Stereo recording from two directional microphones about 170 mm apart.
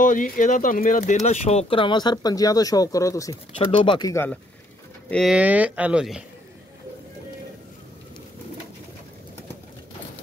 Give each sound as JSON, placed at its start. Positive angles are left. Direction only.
{"t": 0.0, "sound": "speech", "side_deg": 50}
{"t": 3.5, "sound": "speech", "side_deg": 30}
{"t": 4.1, "sound": "speech", "side_deg": 15}
{"t": 5.1, "sound": "speech", "side_deg": 0}